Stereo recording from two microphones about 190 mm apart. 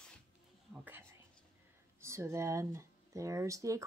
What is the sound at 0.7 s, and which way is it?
Whispering, 10° right (ahead or behind).